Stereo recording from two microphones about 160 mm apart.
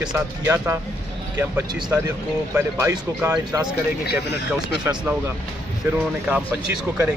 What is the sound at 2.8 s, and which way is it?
Speech, 20° right (ahead or behind).